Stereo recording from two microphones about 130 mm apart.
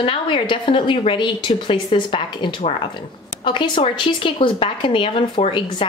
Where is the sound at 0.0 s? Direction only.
40° left (ahead or behind).